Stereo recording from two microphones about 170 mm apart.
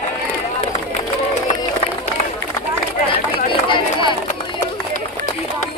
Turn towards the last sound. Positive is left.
turn(degrees=30)  # may be behind; listen again after turning